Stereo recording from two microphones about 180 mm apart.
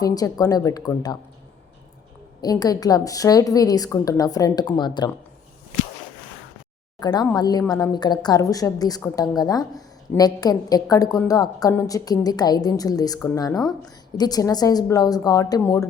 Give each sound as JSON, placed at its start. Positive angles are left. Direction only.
{"t": 0.0, "sound": "a woman's voice", "side_deg": 20}
{"t": 2.4, "sound": "a woman's voice", "side_deg": 20}
{"t": 7.0, "sound": "a woman's voice", "side_deg": 25}